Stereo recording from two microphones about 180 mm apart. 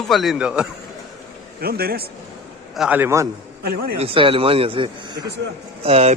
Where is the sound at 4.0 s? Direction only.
30° right (ahead or behind).